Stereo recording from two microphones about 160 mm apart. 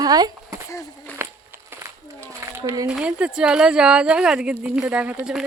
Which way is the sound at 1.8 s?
15° right (ahead or behind).